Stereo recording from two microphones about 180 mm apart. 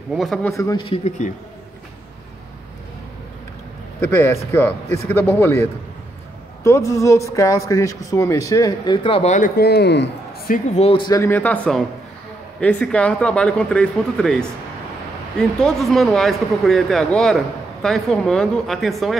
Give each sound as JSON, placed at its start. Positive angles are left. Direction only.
{"t": 0.1, "sound": "speech", "side_deg": 0}
{"t": 0.6, "sound": "speech", "side_deg": 20}
{"t": 0.8, "sound": "speech", "side_deg": 35}
{"t": 4.0, "sound": "speech", "side_deg": 15}
{"t": 9.6, "sound": "speech", "side_deg": 65}
{"t": 10.8, "sound": "speech", "side_deg": 30}
{"t": 15.3, "sound": "speech", "side_deg": 5}